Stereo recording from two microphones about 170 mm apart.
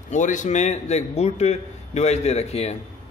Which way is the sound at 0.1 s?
45° left (ahead or behind).